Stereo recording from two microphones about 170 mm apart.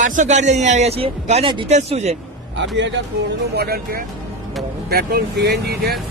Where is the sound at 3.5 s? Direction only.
65° right (ahead or behind).